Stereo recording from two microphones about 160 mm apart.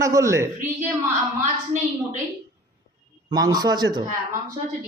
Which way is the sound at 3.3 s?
25° right (ahead or behind).